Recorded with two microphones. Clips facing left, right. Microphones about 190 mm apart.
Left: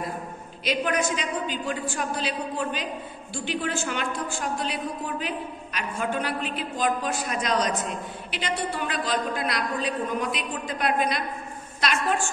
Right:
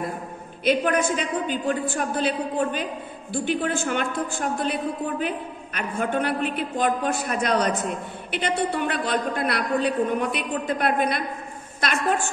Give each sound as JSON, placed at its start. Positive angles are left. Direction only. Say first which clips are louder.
{"t": 0.7, "sound": "a woman's voice", "louder": "right 4 dB", "side_deg": -55}